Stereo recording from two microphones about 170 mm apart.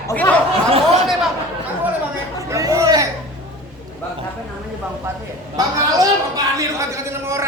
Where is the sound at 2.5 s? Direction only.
20° right (ahead or behind).